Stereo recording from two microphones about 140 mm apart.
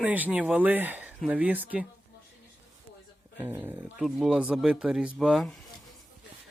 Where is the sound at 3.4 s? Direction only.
15° right (ahead or behind).